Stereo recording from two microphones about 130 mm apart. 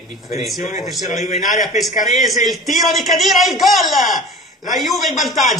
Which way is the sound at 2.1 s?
Centre (ahead or behind).